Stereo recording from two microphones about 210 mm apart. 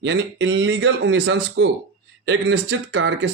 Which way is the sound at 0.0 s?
60° right (ahead or behind).